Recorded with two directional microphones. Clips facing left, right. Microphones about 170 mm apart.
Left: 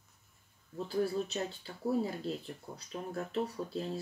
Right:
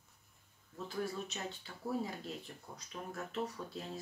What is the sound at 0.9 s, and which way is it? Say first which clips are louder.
Speech: left 7 dB; 35° left (ahead or behind).